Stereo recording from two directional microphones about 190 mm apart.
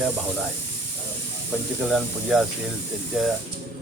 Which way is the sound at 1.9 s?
Centre (ahead or behind).